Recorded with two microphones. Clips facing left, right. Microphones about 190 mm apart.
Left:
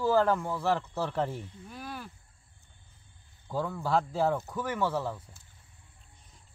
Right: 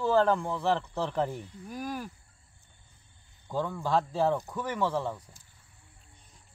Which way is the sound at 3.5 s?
5° left (ahead or behind).